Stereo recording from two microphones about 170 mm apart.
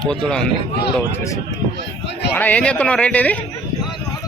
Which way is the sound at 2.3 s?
10° left (ahead or behind).